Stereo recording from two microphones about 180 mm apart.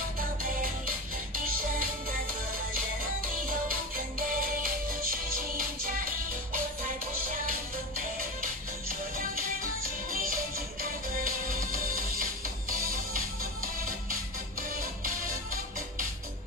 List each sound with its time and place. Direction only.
0.4 s music: 50° right (ahead or behind)
9.2 s music: 50° right (ahead or behind)